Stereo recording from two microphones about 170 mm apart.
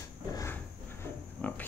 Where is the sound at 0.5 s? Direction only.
10° left (ahead or behind).